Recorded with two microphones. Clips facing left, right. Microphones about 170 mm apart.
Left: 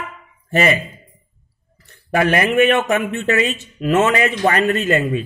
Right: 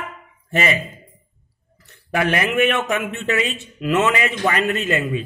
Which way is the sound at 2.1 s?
40° left (ahead or behind).